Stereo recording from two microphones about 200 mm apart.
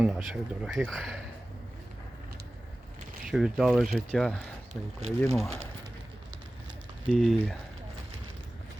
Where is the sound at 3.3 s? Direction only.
Centre (ahead or behind).